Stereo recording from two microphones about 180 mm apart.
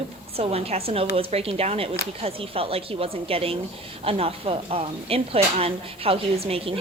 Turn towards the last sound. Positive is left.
turn(degrees=-30)  # may be behind; listen again after turning